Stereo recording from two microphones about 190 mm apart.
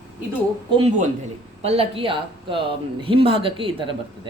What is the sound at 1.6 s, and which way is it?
Speech, 30° right (ahead or behind).